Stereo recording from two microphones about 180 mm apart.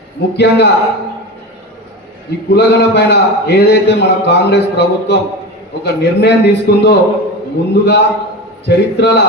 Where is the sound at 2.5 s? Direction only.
70° left (ahead or behind).